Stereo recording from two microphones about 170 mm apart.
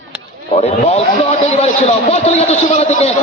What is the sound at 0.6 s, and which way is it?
A man's voice, 40° left (ahead or behind).